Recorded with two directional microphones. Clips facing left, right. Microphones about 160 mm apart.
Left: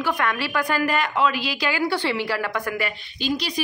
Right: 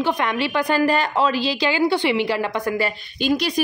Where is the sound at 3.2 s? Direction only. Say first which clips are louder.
Right 5 dB; 55° right (ahead or behind).